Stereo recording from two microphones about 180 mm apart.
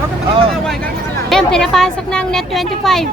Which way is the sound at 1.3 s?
5° left (ahead or behind).